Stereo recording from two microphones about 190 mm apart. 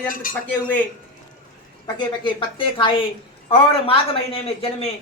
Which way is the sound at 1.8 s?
25° left (ahead or behind).